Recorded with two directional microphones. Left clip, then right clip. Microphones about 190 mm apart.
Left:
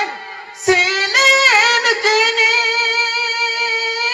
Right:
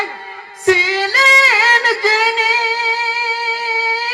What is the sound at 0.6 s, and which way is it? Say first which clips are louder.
Female singing: right 1 dB; 25° right (ahead or behind).